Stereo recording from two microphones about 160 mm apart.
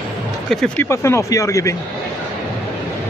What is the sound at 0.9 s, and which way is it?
Speech, 15° left (ahead or behind).